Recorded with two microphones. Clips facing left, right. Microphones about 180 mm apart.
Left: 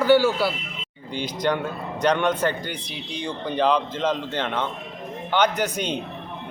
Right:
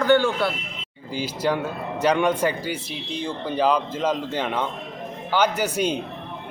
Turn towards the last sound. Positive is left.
turn(degrees=-10)  # may be behind; listen again after turning